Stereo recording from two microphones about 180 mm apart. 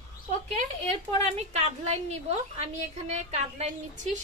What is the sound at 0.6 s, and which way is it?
A woman's voice, 35° right (ahead or behind).